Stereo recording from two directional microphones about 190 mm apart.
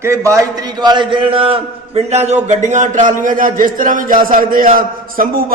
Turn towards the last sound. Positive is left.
turn(degrees=-50)  # may be behind; listen again after turning